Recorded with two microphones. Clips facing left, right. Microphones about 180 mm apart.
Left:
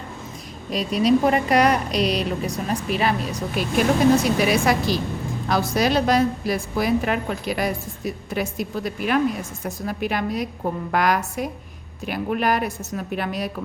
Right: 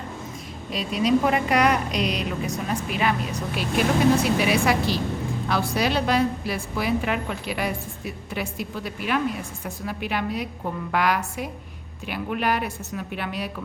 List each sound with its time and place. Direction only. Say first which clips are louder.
0.7 s a woman's voice: left 3 dB; 40° left (ahead or behind)